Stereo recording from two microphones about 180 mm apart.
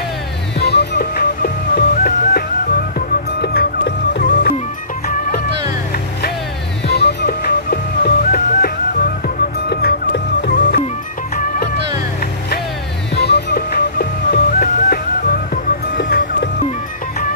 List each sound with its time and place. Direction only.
0.6 s music: 65° left (ahead or behind)
6.9 s music: 65° left (ahead or behind)
13.1 s music: 70° left (ahead or behind)